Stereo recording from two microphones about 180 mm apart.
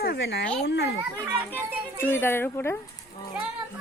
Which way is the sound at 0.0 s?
65° left (ahead or behind).